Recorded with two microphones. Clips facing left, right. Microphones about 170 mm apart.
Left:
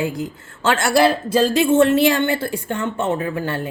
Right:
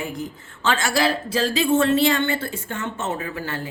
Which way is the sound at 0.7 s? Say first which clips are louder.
Left 6 dB; 60° left (ahead or behind).